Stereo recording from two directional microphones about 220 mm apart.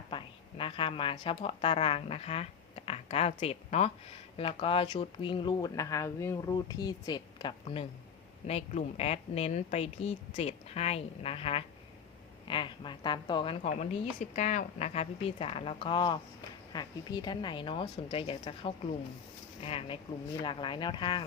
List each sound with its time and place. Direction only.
0.1 s a woman's voice: 25° left (ahead or behind)